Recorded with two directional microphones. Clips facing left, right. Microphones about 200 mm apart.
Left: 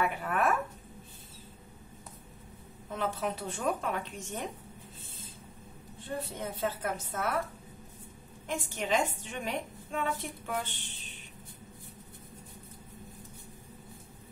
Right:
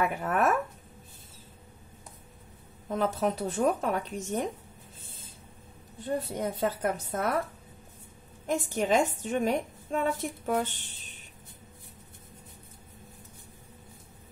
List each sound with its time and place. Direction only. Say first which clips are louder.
0.2 s speech: right 3 dB; 45° right (ahead or behind)
2.9 s a woman's voice: right 5 dB; 40° right (ahead or behind)
6.0 s a woman's voice: right 6 dB; 40° right (ahead or behind)
8.5 s a woman's voice: right 6 dB; 45° right (ahead or behind)